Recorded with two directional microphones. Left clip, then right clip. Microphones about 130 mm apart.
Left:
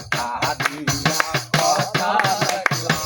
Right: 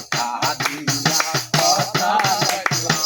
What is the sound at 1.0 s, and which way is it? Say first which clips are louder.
Music: right 1 dB; 10° left (ahead or behind).